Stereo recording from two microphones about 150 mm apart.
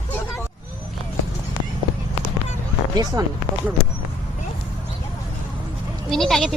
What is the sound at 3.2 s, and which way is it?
Speech, 25° right (ahead or behind).